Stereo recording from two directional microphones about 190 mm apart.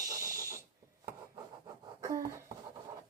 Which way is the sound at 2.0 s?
15° right (ahead or behind).